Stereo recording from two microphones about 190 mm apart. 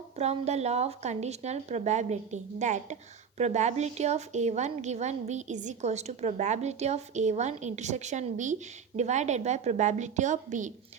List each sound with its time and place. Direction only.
0.2 s a woman's voice: 35° right (ahead or behind)